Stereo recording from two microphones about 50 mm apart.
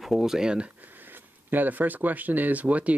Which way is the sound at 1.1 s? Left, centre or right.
Right.